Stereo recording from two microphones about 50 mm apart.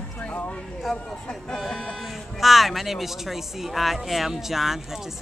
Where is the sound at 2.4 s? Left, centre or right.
Centre.